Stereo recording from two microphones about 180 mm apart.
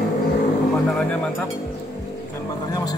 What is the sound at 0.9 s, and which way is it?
Speech, centre (ahead or behind).